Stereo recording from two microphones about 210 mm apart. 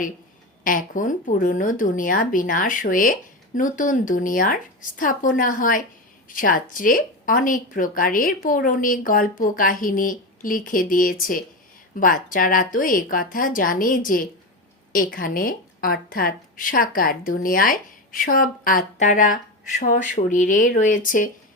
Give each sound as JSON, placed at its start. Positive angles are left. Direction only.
{"t": 0.6, "sound": "a woman's voice", "side_deg": 40}